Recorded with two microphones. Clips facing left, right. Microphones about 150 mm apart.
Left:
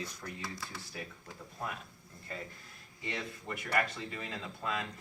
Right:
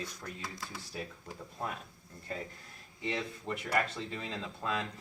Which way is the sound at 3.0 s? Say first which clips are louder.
Right 4 dB; 30° right (ahead or behind).